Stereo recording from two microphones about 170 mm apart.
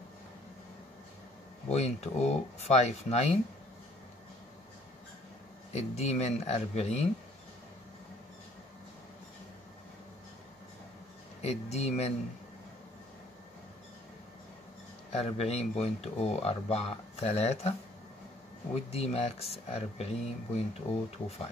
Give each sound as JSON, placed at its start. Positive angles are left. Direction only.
{"t": 1.7, "sound": "speech", "side_deg": 40}
{"t": 5.7, "sound": "speech", "side_deg": 40}
{"t": 11.4, "sound": "speech", "side_deg": 40}
{"t": 15.1, "sound": "speech", "side_deg": 40}
{"t": 18.8, "sound": "speech", "side_deg": 35}